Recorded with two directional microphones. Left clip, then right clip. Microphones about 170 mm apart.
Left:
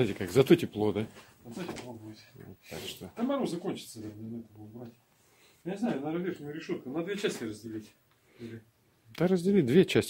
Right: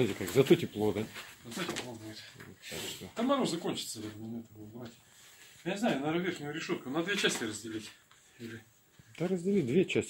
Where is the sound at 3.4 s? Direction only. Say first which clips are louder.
Even; 35° left (ahead or behind).